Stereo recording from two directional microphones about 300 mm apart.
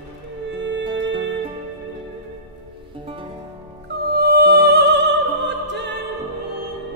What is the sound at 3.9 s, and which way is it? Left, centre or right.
Music, right.